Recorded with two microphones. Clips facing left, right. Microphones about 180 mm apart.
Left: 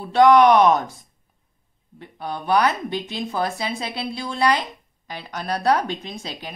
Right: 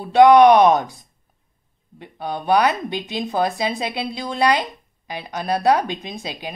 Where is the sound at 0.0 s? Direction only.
15° right (ahead or behind).